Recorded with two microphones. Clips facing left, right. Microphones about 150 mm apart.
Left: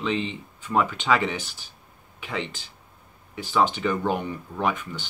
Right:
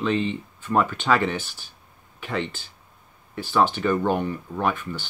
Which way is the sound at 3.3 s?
15° left (ahead or behind).